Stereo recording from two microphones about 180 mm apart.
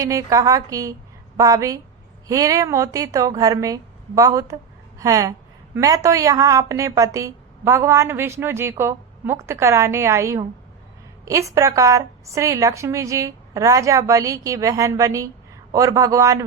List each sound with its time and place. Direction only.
0.0 s a woman's voice: 20° right (ahead or behind)